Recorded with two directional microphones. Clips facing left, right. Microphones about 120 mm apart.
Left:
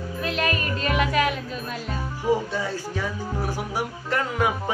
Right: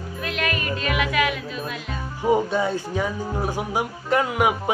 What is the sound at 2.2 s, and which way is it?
Speech, 20° right (ahead or behind).